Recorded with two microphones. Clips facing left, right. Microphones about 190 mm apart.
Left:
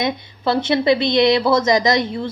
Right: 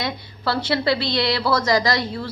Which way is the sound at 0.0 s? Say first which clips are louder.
Left 5 dB; 20° left (ahead or behind).